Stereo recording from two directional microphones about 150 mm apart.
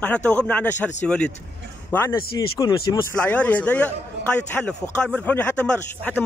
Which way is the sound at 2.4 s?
25° left (ahead or behind).